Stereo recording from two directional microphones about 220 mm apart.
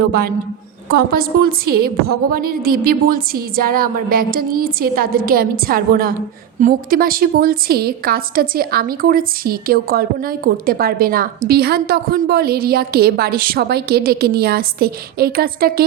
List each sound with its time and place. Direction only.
0.1 s a woman's voice: 45° right (ahead or behind)